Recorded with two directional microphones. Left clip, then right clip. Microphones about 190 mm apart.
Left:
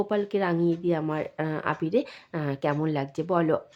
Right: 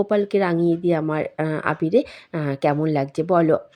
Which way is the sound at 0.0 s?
20° right (ahead or behind).